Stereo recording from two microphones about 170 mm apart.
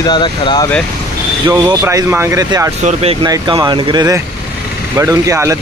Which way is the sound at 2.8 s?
35° right (ahead or behind).